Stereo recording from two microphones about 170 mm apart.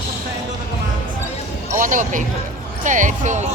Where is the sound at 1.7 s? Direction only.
50° right (ahead or behind).